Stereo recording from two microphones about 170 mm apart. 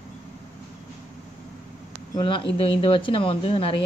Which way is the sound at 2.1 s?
30° left (ahead or behind).